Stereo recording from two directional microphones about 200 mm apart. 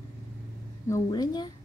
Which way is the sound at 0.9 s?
20° left (ahead or behind).